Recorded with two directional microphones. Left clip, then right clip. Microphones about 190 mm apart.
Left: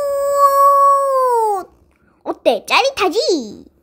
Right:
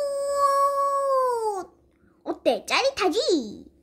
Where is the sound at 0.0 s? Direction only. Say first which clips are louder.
Left 10 dB; 10° left (ahead or behind).